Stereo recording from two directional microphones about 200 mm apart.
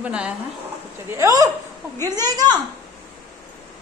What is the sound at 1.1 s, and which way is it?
A woman's voice, 15° right (ahead or behind).